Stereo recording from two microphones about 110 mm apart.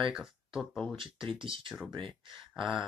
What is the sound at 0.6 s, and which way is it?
Speech, 5° left (ahead or behind).